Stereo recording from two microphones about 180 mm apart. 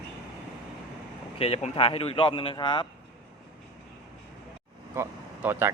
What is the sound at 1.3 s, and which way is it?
Speech, 35° left (ahead or behind).